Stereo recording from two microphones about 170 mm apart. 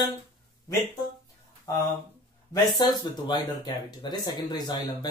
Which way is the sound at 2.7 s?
25° left (ahead or behind).